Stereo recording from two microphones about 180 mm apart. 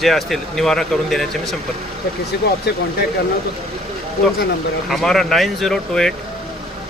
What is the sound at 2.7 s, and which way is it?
Speech, 65° left (ahead or behind).